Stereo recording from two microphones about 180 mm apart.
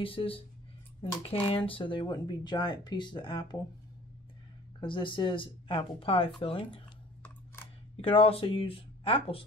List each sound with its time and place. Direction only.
0.0 s speech: 30° left (ahead or behind)
4.7 s speech: 25° left (ahead or behind)
8.0 s speech: 30° left (ahead or behind)